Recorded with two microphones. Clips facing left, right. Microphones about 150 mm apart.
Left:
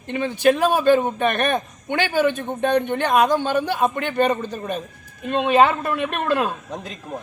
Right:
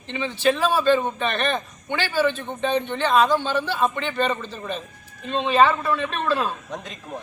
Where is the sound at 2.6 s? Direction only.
55° left (ahead or behind).